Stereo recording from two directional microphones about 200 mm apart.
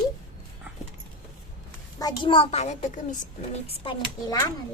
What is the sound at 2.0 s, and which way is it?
A woman's voice, 25° left (ahead or behind).